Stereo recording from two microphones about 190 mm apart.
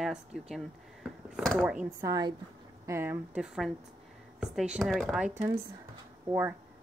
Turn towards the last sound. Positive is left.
turn(degrees=-15)  # may be behind; listen again after turning